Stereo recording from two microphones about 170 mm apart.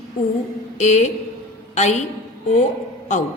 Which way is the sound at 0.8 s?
40° left (ahead or behind).